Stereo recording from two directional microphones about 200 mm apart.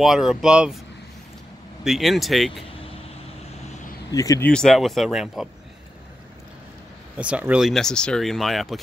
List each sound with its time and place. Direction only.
0.0 s speech: centre (ahead or behind)
1.9 s speech: centre (ahead or behind)
4.1 s speech: 15° left (ahead or behind)
4.5 s speech: 5° left (ahead or behind)
7.2 s speech: 5° right (ahead or behind)